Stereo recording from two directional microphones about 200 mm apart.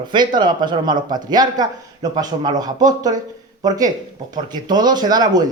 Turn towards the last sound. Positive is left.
turn(degrees=-20)  # may be behind; listen again after turning